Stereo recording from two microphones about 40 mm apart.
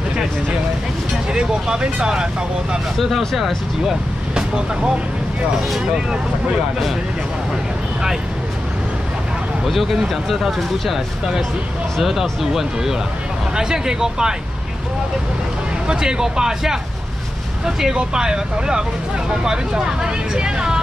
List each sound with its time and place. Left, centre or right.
1.3 s speech: right
3.0 s speech: centre
4.4 s speech: centre
9.7 s speech: centre
15.9 s speech: centre